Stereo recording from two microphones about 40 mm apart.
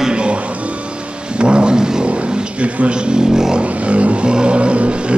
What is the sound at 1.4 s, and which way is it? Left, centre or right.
Vehicle, right.